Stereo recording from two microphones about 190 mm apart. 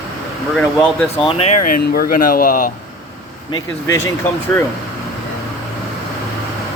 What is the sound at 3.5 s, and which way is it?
Speech, 20° left (ahead or behind).